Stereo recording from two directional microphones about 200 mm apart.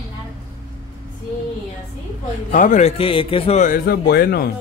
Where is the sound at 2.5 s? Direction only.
40° left (ahead or behind).